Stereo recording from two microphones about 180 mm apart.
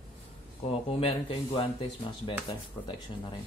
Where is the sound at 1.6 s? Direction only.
30° left (ahead or behind).